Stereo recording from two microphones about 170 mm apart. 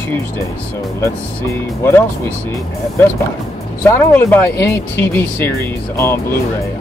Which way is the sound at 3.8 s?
10° left (ahead or behind).